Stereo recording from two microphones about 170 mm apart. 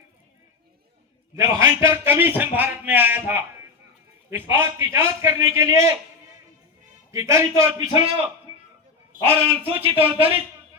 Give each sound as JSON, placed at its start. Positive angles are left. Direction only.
{"t": 1.5, "sound": "a man's voice", "side_deg": -15}
{"t": 7.1, "sound": "a man's voice", "side_deg": -15}
{"t": 9.2, "sound": "a man's voice", "side_deg": -35}